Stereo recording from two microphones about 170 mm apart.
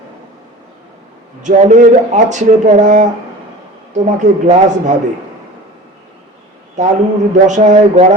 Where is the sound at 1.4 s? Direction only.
45° right (ahead or behind).